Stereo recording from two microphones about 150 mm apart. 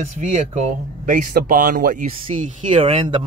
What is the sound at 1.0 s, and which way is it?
Speech, 65° right (ahead or behind).